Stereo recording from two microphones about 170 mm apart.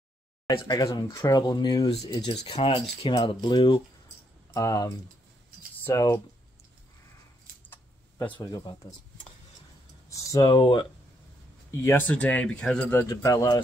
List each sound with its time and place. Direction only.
0.5 s speech: 25° left (ahead or behind)
2.4 s speech: 30° left (ahead or behind)
7.6 s a sound: 10° left (ahead or behind)
8.3 s speech: 25° left (ahead or behind)
10.0 s speech: 20° left (ahead or behind)
11.7 s speech: 15° left (ahead or behind)